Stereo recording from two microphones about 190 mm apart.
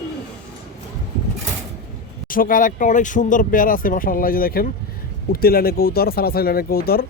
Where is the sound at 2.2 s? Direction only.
45° left (ahead or behind).